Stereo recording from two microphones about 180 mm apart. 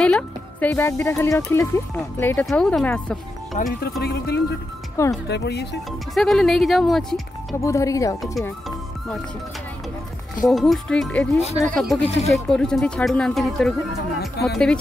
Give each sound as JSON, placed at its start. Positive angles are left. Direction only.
{"t": 0.0, "sound": "speech", "side_deg": 5}
{"t": 3.6, "sound": "speech", "side_deg": 40}
{"t": 4.0, "sound": "speech", "side_deg": 60}
{"t": 5.0, "sound": "speech", "side_deg": 15}
{"t": 5.3, "sound": "speech", "side_deg": 70}
{"t": 6.1, "sound": "speech", "side_deg": 0}
{"t": 7.6, "sound": "speech", "side_deg": 15}
{"t": 10.4, "sound": "speech", "side_deg": 0}